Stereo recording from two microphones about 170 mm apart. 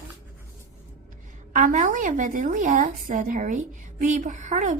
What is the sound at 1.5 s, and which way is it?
A woman's voice, 50° right (ahead or behind).